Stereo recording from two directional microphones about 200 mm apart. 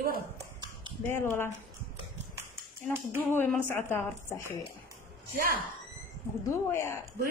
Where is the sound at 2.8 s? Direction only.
10° left (ahead or behind).